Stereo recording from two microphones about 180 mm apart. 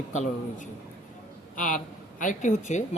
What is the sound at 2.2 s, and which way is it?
Speech, 45° left (ahead or behind).